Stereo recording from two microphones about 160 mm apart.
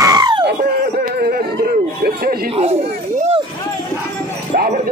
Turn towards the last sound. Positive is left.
turn(degrees=-50)  # may be behind; listen again after turning